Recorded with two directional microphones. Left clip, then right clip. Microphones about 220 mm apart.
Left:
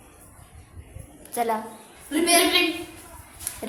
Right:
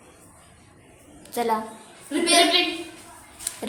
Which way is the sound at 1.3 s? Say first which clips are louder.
Right 1 dB; 15° right (ahead or behind).